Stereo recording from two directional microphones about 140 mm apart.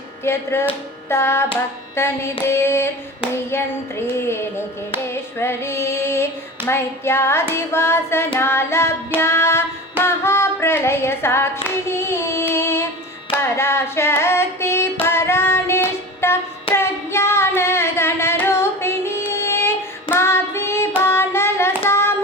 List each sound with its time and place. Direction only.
0.3 s music: 20° left (ahead or behind)
4.2 s music: 15° left (ahead or behind)
10.0 s child singing: 15° left (ahead or behind)
12.5 s music: 15° left (ahead or behind)
13.4 s carnatic music: 15° left (ahead or behind)
15.0 s child singing: 15° left (ahead or behind)